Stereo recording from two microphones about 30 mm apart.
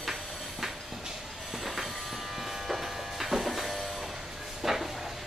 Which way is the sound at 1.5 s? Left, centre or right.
Centre.